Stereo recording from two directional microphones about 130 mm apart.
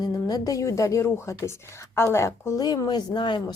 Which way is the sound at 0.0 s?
30° left (ahead or behind).